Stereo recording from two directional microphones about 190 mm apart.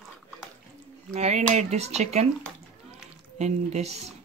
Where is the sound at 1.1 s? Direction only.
35° right (ahead or behind).